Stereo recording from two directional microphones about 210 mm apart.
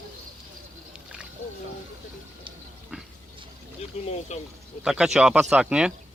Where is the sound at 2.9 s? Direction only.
5° right (ahead or behind).